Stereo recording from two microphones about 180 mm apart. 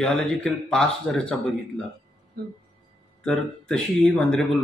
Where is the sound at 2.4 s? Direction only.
60° right (ahead or behind).